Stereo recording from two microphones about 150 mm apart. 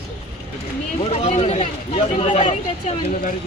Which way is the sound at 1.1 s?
45° left (ahead or behind).